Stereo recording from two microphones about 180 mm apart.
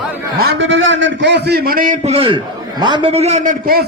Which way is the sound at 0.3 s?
75° right (ahead or behind).